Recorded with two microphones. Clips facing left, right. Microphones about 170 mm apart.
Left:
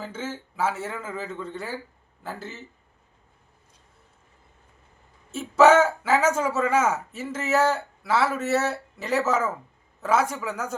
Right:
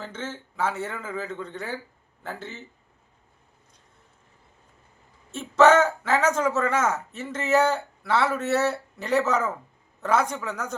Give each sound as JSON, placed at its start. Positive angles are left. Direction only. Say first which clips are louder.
{"t": 0.0, "sound": "speech", "louder": "left 2 dB", "side_deg": 10}
{"t": 5.3, "sound": "a man's voice", "louder": "left 1 dB", "side_deg": 5}